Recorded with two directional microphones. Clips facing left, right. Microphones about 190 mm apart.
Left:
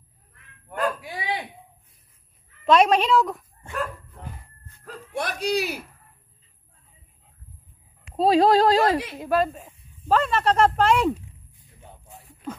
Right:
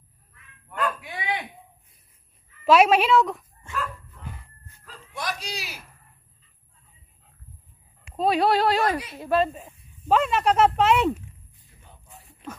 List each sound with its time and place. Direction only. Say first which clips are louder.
0.7 s a sound: left 2 dB; 35° left (ahead or behind)
2.6 s speech: even; 5° right (ahead or behind)
4.8 s speech: left 3 dB; 60° left (ahead or behind)
8.2 s speech: left 4 dB; 35° left (ahead or behind)
9.2 s speech: right 1 dB; 10° left (ahead or behind)
9.5 s speech: even; 5° right (ahead or behind)